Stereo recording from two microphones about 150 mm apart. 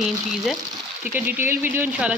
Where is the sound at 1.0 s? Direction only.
10° right (ahead or behind).